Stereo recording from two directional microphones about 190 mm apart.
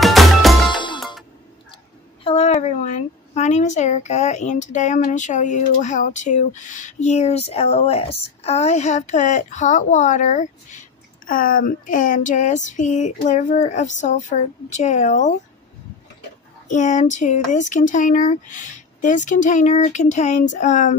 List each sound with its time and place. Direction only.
0.0 s music: centre (ahead or behind)
0.7 s music: 25° left (ahead or behind)
2.2 s speech: 35° left (ahead or behind)
16.6 s speech: 40° left (ahead or behind)